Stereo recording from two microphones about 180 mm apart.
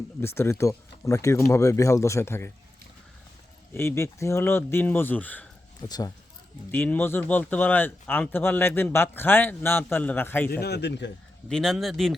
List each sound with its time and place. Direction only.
0.2 s speech: 15° left (ahead or behind)
3.8 s speech: 15° left (ahead or behind)
5.8 s speech: 20° left (ahead or behind)
6.7 s speech: 10° left (ahead or behind)
10.5 s speech: 65° left (ahead or behind)
11.4 s a man's voice: centre (ahead or behind)